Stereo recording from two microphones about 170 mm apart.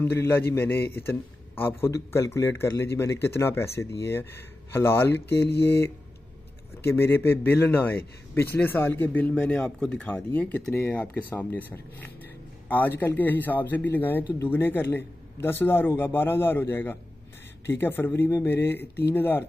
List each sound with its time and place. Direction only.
0.0 s a man's voice: 15° left (ahead or behind)
5.1 s speech: 75° left (ahead or behind)
6.8 s a man's voice: 15° left (ahead or behind)